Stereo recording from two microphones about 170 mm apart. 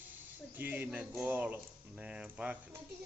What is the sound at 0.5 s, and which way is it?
Speech, 10° right (ahead or behind).